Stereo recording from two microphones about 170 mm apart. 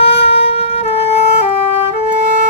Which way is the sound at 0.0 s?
35° left (ahead or behind).